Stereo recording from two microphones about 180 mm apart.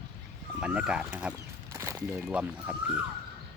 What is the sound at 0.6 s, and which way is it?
Speech, 5° right (ahead or behind).